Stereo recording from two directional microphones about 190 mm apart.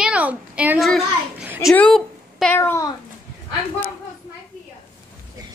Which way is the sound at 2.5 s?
15° left (ahead or behind).